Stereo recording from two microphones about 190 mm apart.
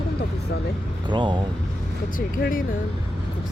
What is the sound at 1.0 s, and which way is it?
Speech, 25° right (ahead or behind).